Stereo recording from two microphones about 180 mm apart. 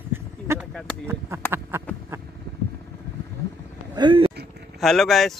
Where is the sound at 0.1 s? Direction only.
10° right (ahead or behind).